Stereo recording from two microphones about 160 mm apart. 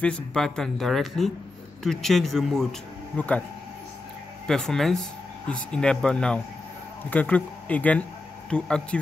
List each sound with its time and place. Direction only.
0.0 s speech: 5° left (ahead or behind)
4.5 s speech: 5° left (ahead or behind)